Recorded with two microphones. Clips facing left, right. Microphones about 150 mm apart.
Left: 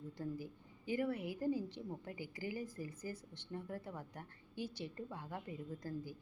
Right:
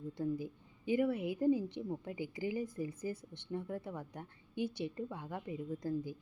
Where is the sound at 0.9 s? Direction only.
20° right (ahead or behind).